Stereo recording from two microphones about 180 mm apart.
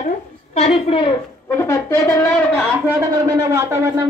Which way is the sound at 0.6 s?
30° left (ahead or behind).